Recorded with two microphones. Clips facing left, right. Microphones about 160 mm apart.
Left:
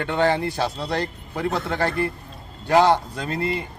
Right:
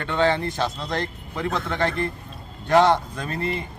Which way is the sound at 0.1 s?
10° left (ahead or behind).